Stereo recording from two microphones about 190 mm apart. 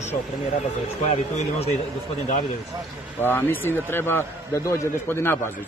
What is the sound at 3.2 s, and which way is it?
A man's voice, 10° left (ahead or behind).